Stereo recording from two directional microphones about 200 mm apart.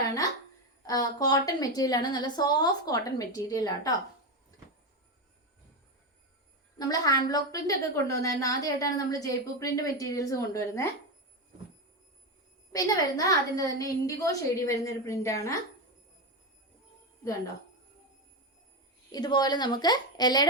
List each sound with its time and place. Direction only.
0.8 s a woman's voice: 20° left (ahead or behind)
6.7 s a woman's voice: 20° left (ahead or behind)
12.7 s a woman's voice: 15° left (ahead or behind)
19.1 s a woman's voice: 20° left (ahead or behind)